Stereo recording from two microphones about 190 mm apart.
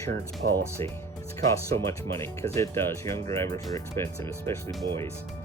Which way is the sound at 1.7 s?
15° left (ahead or behind).